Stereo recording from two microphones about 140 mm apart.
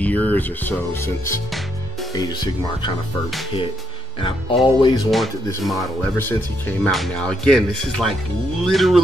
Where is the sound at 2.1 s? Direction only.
30° left (ahead or behind).